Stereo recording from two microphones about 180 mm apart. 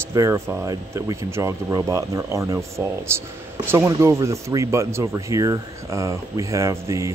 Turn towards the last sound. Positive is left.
turn(degrees=-15)  # may be behind; listen again after turning